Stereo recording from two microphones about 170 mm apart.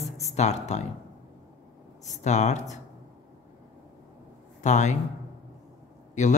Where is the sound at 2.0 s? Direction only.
45° left (ahead or behind).